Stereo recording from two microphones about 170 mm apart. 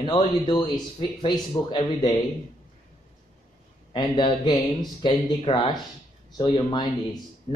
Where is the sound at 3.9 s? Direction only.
25° left (ahead or behind).